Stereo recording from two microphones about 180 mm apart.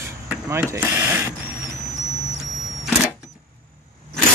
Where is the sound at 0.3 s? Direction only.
15° right (ahead or behind).